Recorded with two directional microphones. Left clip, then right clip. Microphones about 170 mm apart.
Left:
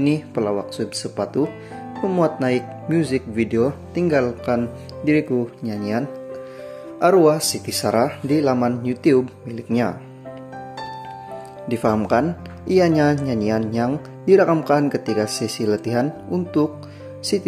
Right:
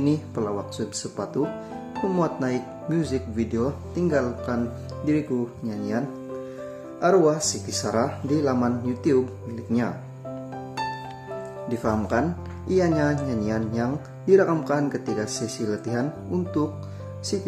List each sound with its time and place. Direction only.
0.0 s speech: 20° left (ahead or behind)
7.0 s speech: 20° left (ahead or behind)
11.7 s speech: 20° left (ahead or behind)